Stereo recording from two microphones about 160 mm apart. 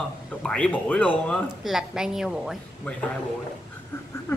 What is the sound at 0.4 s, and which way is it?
A woman's voice, 5° left (ahead or behind).